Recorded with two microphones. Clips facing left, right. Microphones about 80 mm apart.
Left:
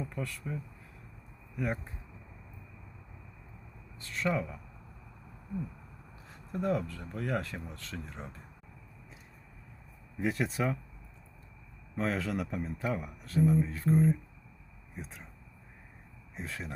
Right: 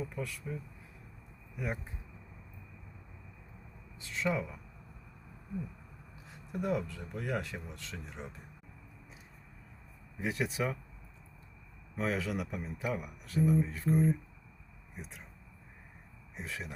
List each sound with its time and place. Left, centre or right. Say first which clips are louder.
0.1 s speech: left 1 dB; centre
1.5 s speech: left 4 dB; centre
4.0 s speech: left 1 dB; centre
6.5 s speech: left 2 dB; centre
10.2 s speech: left 2 dB; centre
11.9 s speech: left 2 dB; centre
16.3 s speech: left 1 dB; centre